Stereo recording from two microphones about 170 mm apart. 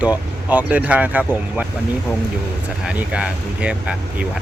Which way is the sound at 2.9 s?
5° right (ahead or behind).